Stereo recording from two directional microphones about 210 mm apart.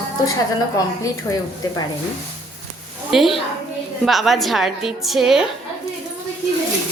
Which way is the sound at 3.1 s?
Centre (ahead or behind).